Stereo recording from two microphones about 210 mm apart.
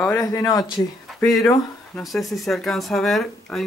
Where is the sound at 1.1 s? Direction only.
Centre (ahead or behind).